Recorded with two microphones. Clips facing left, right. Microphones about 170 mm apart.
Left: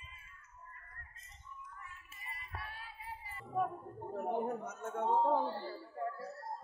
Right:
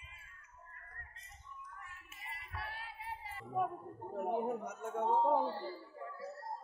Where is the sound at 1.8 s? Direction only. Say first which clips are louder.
Even; 65° right (ahead or behind).